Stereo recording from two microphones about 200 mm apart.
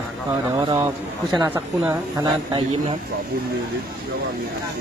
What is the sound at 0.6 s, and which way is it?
Speech, 20° right (ahead or behind).